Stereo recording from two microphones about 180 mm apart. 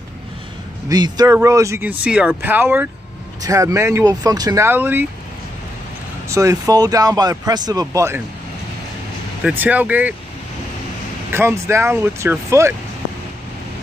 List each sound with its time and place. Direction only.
0.8 s speech: 20° right (ahead or behind)
6.2 s speech: 15° right (ahead or behind)
9.4 s speech: 10° right (ahead or behind)
11.3 s speech: 15° right (ahead or behind)